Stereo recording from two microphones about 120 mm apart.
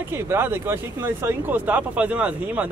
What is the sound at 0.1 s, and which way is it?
Speech, 20° right (ahead or behind).